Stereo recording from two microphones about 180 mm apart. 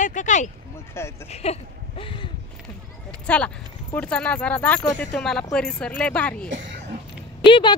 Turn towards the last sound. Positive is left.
turn(degrees=30)  # may be behind; listen again after turning